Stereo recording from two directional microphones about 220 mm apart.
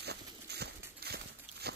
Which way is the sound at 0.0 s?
50° right (ahead or behind).